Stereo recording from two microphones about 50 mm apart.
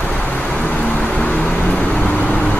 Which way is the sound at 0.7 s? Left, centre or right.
Centre.